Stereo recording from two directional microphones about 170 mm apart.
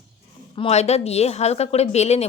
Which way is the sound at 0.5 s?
35° left (ahead or behind).